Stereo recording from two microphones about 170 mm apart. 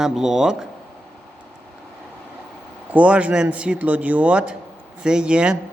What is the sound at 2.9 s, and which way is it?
A man's voice, 10° right (ahead or behind).